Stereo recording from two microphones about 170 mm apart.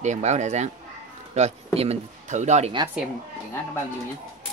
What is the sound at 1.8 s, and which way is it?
Speech, 40° right (ahead or behind).